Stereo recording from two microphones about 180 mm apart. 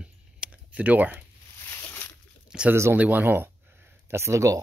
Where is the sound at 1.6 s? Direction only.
15° left (ahead or behind).